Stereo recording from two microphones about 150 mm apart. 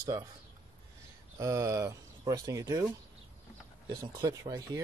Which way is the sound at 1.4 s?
20° right (ahead or behind).